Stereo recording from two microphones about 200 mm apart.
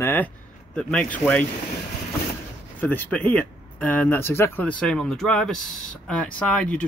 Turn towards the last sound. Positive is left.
turn(degrees=5)  # may be behind; listen again after turning